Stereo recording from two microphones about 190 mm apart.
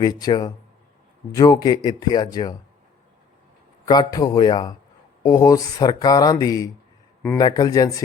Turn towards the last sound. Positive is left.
turn(degrees=20)  # may be behind; listen again after turning